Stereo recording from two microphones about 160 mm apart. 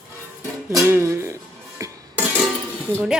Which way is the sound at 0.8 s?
15° right (ahead or behind).